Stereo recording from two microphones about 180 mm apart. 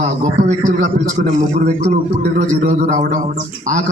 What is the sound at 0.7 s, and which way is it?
A man's voice, 40° right (ahead or behind).